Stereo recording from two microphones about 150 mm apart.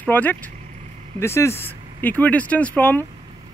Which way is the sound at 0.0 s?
10° left (ahead or behind).